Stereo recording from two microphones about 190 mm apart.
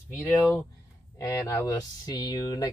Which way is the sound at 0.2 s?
15° left (ahead or behind).